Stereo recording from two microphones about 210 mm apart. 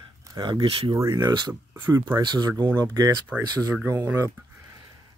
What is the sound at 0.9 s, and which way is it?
Speech, 15° right (ahead or behind).